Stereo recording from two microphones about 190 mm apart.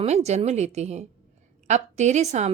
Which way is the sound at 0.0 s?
35° right (ahead or behind).